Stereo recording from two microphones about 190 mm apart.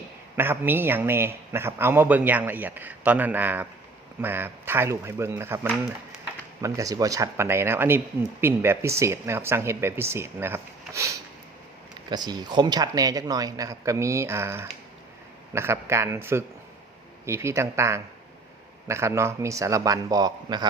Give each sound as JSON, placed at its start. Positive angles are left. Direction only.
{"t": 0.3, "sound": "speech", "side_deg": -10}
{"t": 12.1, "sound": "speech", "side_deg": -20}